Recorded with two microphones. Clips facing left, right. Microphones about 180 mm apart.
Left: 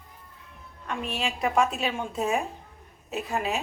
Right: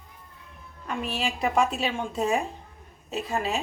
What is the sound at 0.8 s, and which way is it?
A woman's voice, centre (ahead or behind).